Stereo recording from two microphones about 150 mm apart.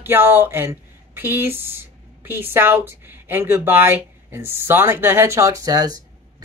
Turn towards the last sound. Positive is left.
turn(degrees=-25)  # may be behind; listen again after turning